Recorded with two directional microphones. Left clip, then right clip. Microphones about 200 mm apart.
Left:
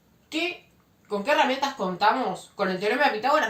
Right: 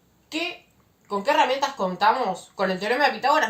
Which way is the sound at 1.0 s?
35° right (ahead or behind).